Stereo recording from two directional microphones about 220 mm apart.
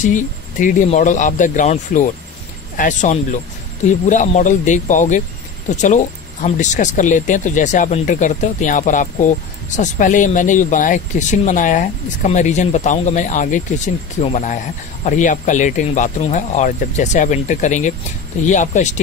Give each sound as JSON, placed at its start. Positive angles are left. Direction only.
{"t": 0.0, "sound": "speech", "side_deg": 35}
{"t": 6.4, "sound": "speech", "side_deg": 35}